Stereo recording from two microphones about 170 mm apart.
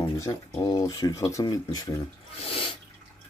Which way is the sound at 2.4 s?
30° left (ahead or behind).